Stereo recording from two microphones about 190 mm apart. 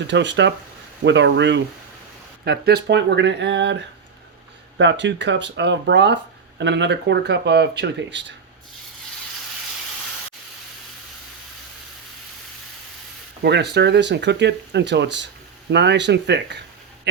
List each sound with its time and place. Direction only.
0.1 s speech: 70° right (ahead or behind)
2.4 s speech: 60° right (ahead or behind)
13.4 s speech: 60° right (ahead or behind)